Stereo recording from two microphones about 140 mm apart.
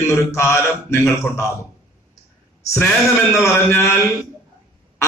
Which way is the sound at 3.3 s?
20° left (ahead or behind).